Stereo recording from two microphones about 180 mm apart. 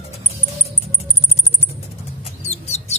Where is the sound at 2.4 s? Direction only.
35° left (ahead or behind).